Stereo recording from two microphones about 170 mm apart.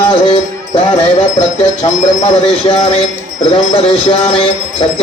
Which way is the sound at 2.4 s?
35° left (ahead or behind).